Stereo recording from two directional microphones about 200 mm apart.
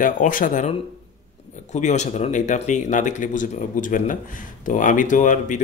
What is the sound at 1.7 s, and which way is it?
Speech, 35° left (ahead or behind).